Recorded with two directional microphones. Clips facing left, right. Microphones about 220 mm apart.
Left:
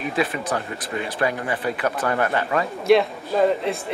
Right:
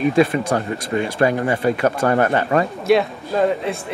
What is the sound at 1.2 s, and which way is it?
Speech, 45° right (ahead or behind).